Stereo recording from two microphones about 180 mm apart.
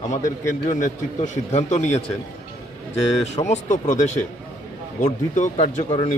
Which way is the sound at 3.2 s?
40° left (ahead or behind).